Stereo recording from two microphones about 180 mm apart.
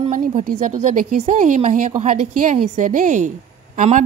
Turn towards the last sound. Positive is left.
turn(degrees=-45)  # may be behind; listen again after turning